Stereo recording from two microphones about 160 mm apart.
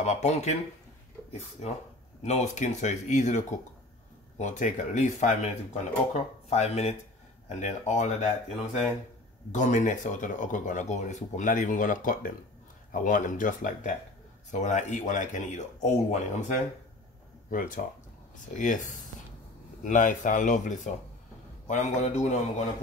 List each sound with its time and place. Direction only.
0.0 s speech: 45° left (ahead or behind)
2.2 s speech: 45° left (ahead or behind)
17.5 s speech: 60° left (ahead or behind)